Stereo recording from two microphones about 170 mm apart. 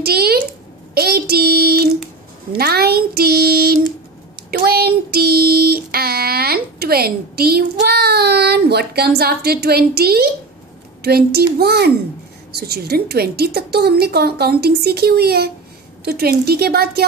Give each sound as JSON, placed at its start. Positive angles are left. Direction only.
{"t": 0.0, "sound": "a woman's voice", "side_deg": -65}
{"t": 2.5, "sound": "child singing", "side_deg": -65}
{"t": 11.0, "sound": "a woman's voice", "side_deg": -65}